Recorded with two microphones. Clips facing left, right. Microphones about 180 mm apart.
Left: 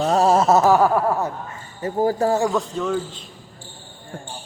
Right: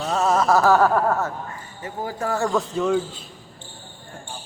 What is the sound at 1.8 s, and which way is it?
Speech, 40° left (ahead or behind).